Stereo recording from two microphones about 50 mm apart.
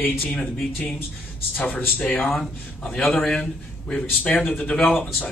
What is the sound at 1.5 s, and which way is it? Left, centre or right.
Speech, left.